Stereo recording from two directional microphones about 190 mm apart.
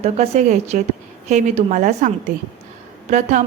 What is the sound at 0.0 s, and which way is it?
A woman's voice, 35° right (ahead or behind).